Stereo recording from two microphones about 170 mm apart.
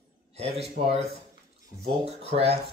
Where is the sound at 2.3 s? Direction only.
35° right (ahead or behind).